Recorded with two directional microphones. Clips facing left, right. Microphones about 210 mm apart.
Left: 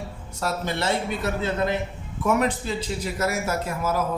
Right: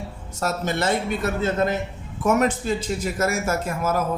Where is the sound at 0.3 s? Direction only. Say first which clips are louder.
Right 2 dB; 45° right (ahead or behind).